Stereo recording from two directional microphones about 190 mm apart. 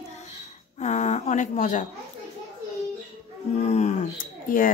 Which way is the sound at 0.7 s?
40° left (ahead or behind).